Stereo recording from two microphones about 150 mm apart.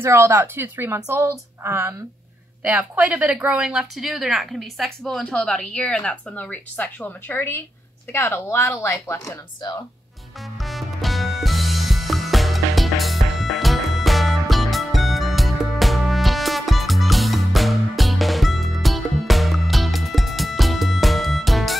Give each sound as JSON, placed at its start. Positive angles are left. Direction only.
{"t": 0.0, "sound": "a woman's voice", "side_deg": -15}
{"t": 10.6, "sound": "music", "side_deg": 0}